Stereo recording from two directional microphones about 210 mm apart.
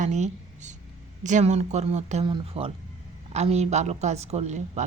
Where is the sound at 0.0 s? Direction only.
35° right (ahead or behind).